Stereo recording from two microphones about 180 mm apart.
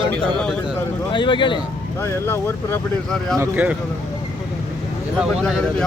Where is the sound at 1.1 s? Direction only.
25° left (ahead or behind).